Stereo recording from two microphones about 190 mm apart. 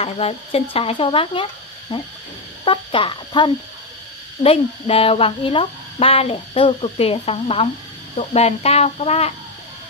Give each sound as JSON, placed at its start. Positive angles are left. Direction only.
{"t": 0.0, "sound": "speech", "side_deg": 30}